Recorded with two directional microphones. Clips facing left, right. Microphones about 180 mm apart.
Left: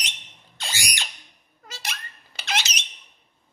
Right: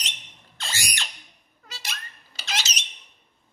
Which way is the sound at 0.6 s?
15° left (ahead or behind).